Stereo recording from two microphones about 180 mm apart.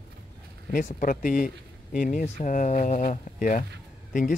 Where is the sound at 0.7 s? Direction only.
50° left (ahead or behind).